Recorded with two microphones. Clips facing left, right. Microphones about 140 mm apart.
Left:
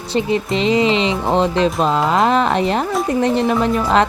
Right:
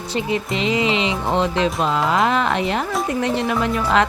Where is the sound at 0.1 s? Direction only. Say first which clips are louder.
Left 5 dB; 30° left (ahead or behind).